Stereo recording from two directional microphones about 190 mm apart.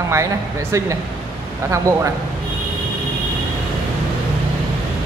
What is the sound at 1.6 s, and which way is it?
Speech, 15° right (ahead or behind).